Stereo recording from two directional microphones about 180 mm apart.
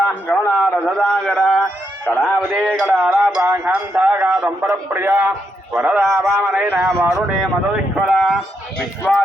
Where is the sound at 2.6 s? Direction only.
Centre (ahead or behind).